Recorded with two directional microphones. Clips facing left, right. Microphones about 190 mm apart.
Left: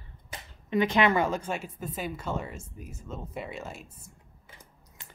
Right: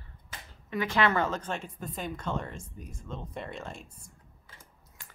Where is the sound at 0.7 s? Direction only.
20° left (ahead or behind).